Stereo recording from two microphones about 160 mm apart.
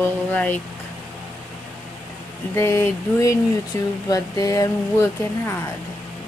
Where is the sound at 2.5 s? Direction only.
15° left (ahead or behind).